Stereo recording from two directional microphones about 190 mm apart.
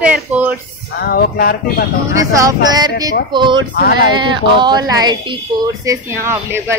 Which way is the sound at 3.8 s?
55° left (ahead or behind).